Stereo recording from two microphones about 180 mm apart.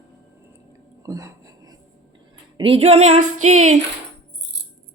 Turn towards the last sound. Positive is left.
turn(degrees=-40)  # may be behind; listen again after turning